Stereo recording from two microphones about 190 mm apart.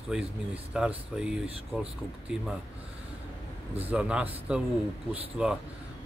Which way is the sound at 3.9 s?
5° right (ahead or behind).